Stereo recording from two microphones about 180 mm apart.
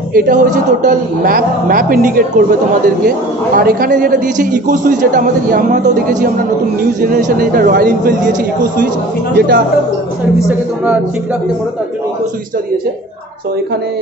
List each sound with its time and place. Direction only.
0.1 s a man's voice: 50° right (ahead or behind)
9.3 s speech: 60° right (ahead or behind)